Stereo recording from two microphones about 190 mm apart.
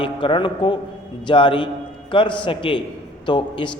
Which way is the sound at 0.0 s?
25° left (ahead or behind).